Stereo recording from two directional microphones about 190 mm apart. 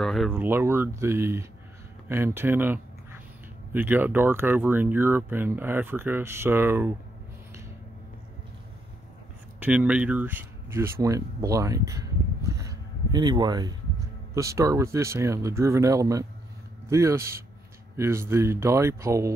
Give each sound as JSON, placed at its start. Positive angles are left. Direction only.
{"t": 0.0, "sound": "a sound", "side_deg": 0}
{"t": 0.3, "sound": "speech", "side_deg": -10}
{"t": 9.6, "sound": "speech", "side_deg": -5}